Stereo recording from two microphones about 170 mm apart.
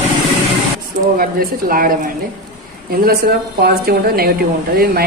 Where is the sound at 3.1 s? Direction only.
65° right (ahead or behind).